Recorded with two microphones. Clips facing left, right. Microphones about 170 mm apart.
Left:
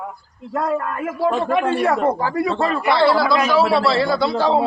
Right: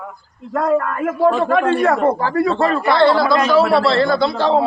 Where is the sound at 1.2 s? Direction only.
45° right (ahead or behind).